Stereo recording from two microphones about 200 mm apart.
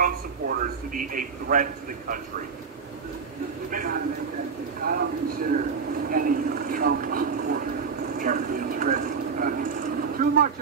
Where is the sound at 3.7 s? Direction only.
45° right (ahead or behind).